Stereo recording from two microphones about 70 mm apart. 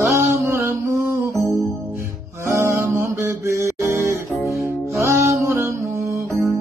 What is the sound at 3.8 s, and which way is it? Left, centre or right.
Music, right.